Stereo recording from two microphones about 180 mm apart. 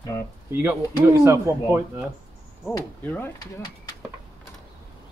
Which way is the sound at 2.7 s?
10° left (ahead or behind).